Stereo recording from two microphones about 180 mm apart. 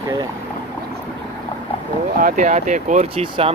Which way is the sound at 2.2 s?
45° right (ahead or behind).